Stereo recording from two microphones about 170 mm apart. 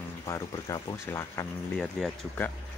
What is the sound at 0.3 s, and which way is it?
Speech, 20° left (ahead or behind).